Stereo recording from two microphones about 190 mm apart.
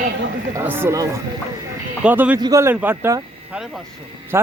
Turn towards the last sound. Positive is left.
turn(degrees=-15)  # may be behind; listen again after turning